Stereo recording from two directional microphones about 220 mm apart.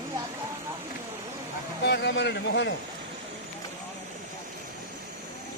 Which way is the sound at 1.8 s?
50° left (ahead or behind).